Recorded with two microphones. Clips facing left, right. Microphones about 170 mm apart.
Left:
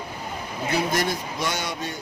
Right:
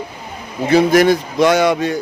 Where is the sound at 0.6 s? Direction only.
90° right.